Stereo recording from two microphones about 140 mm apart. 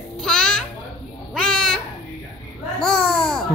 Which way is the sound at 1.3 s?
5° left (ahead or behind).